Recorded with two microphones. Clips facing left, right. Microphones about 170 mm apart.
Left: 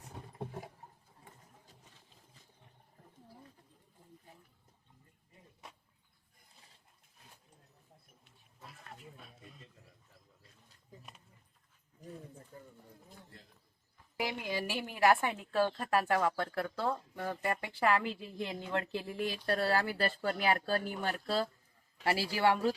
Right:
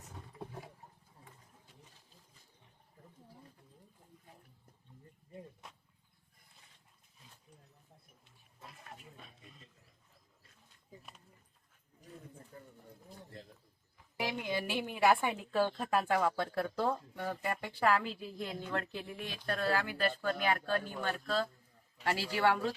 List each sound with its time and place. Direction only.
9.1 s a sound: centre (ahead or behind)
14.2 s a woman's voice: 5° left (ahead or behind)
17.2 s a woman's voice: centre (ahead or behind)
19.0 s speech: 35° left (ahead or behind)